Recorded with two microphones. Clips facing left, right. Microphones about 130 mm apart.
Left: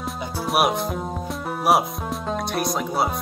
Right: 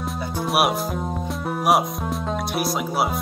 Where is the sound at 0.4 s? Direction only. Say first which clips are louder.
Even; centre (ahead or behind).